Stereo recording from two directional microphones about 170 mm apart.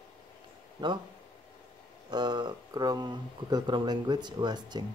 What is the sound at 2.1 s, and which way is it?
Speech, 25° right (ahead or behind).